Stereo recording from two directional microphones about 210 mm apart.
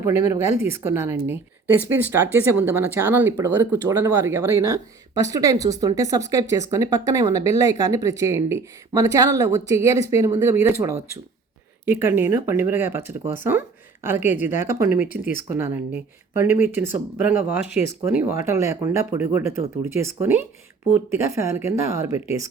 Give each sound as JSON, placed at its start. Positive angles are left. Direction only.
{"t": 0.0, "sound": "speech", "side_deg": -15}